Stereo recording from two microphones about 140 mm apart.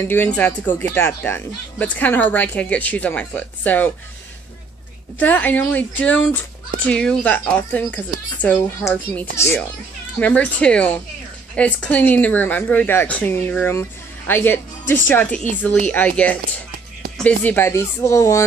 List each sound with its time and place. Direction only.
0.0 s speech: 15° left (ahead or behind)
5.2 s speech: 10° left (ahead or behind)
17.2 s speech: 10° left (ahead or behind)